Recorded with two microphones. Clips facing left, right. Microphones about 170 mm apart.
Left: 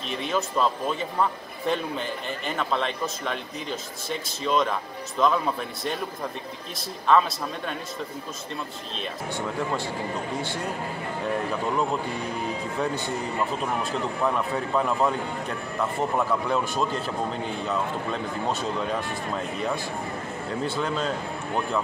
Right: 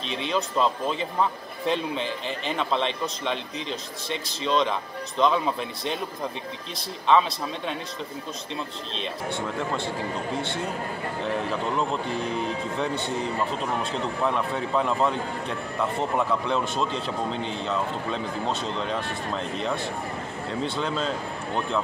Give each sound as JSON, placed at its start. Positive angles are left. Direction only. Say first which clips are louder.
{"t": 0.2, "sound": "speech", "louder": "even", "side_deg": 5}
{"t": 7.1, "sound": "speech", "louder": "even", "side_deg": 0}
{"t": 8.9, "sound": "speech", "louder": "right 1 dB", "side_deg": -25}
{"t": 14.2, "sound": "speech", "louder": "even", "side_deg": 5}